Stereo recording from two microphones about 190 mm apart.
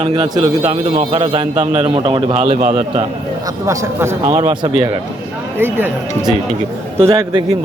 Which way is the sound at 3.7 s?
15° right (ahead or behind).